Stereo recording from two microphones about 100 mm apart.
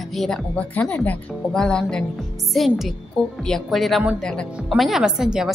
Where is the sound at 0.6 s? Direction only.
15° left (ahead or behind).